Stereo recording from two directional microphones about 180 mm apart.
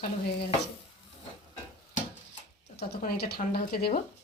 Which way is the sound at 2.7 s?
60° left (ahead or behind).